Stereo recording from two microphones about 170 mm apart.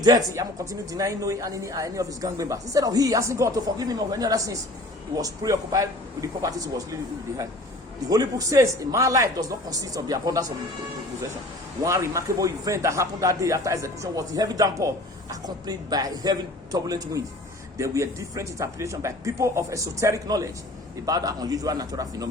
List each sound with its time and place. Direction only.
0.0 s a man's voice: 20° right (ahead or behind)
8.1 s a man's voice: 20° right (ahead or behind)
11.8 s a man's voice: 20° right (ahead or behind)